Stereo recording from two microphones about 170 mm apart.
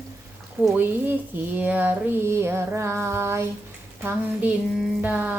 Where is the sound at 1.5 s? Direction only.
10° right (ahead or behind).